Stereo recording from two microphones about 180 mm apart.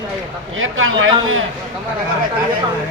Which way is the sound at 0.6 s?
90° right.